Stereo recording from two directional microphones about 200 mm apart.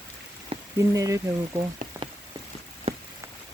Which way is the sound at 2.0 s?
10° right (ahead or behind).